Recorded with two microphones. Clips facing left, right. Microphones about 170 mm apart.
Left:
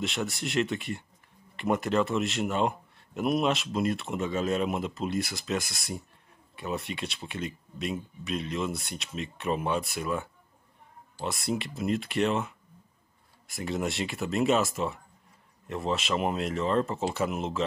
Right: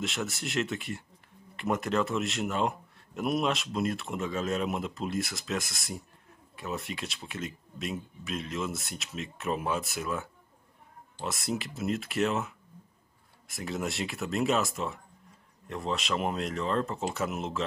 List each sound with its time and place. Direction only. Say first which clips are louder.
0.0 s a man's voice: left 2 dB; centre (ahead or behind)